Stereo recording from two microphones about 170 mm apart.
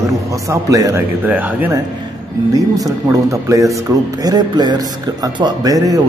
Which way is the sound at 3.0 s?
20° right (ahead or behind).